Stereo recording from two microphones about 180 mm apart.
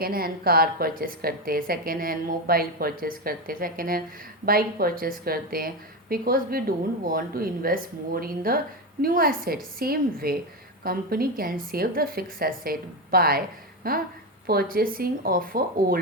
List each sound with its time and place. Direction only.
0.0 s a woman's voice: 55° right (ahead or behind)